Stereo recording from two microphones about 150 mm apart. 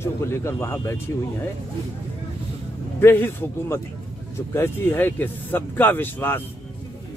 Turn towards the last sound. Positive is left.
turn(degrees=15)  # may be behind; listen again after turning